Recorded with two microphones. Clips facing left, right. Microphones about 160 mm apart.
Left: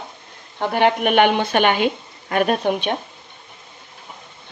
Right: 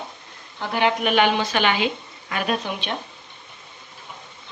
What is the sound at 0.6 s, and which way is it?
Speech, 55° left (ahead or behind).